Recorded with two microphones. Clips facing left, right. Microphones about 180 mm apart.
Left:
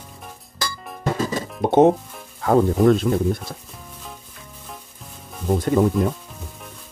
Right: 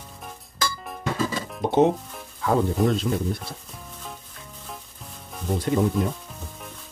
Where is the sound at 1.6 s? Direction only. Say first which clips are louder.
Left 5 dB; 55° left (ahead or behind).